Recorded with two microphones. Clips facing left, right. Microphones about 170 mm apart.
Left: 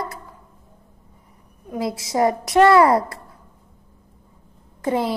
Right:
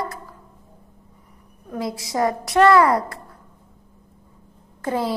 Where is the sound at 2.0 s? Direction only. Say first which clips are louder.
Left 3 dB; 20° left (ahead or behind).